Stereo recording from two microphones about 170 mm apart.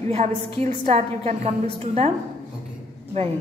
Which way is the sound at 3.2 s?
35° right (ahead or behind).